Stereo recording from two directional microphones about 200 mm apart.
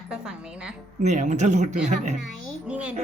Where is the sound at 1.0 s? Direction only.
35° right (ahead or behind).